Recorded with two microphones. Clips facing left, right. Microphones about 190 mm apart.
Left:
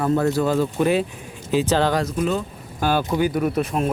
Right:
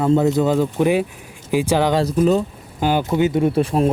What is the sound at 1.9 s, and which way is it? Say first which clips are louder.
Speech: right 6 dB; 35° right (ahead or behind).